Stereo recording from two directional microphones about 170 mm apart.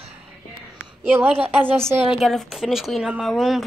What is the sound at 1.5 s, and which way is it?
Speech, 10° right (ahead or behind).